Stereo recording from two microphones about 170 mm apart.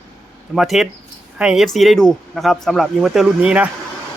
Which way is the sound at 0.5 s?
Centre (ahead or behind).